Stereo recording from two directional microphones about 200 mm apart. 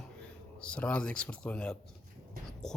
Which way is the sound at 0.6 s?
5° left (ahead or behind).